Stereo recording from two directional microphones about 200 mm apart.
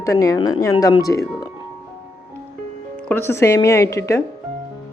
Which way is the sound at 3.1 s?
10° left (ahead or behind).